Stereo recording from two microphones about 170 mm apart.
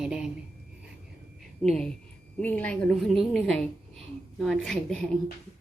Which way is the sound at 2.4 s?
10° left (ahead or behind).